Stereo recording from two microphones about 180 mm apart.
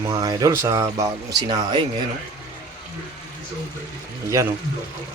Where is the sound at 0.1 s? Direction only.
25° right (ahead or behind).